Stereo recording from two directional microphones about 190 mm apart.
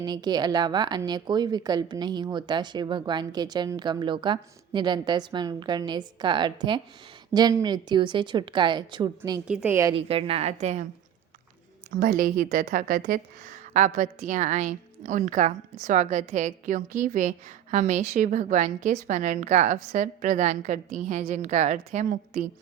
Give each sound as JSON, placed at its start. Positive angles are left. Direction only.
{"t": 0.0, "sound": "speech", "side_deg": -20}
{"t": 9.5, "sound": "a woman's voice", "side_deg": -5}
{"t": 9.9, "sound": "a woman's voice", "side_deg": -30}
{"t": 11.9, "sound": "a woman's voice", "side_deg": -50}